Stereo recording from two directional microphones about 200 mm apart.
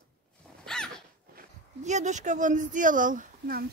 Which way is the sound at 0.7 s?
5° left (ahead or behind).